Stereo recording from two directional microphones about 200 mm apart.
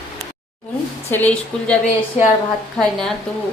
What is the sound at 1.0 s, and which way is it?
Speech, 10° left (ahead or behind).